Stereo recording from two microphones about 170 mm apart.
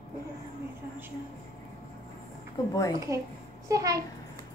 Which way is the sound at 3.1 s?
20° right (ahead or behind).